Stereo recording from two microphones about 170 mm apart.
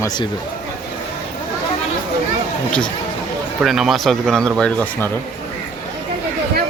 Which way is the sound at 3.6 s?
Centre (ahead or behind).